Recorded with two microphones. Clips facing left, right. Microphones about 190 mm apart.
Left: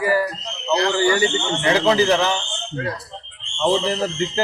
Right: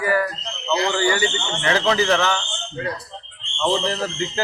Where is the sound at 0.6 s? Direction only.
Centre (ahead or behind).